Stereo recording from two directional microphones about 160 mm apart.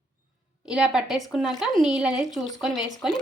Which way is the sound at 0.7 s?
5° right (ahead or behind).